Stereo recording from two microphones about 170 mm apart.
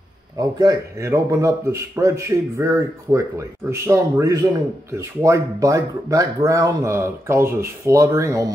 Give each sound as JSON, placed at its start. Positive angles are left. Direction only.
{"t": 0.4, "sound": "a man's voice", "side_deg": -20}